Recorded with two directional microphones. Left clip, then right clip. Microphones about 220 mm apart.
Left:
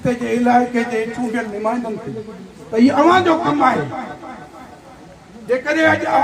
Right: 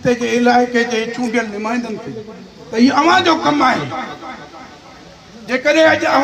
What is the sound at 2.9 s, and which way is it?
Speech, 5° right (ahead or behind).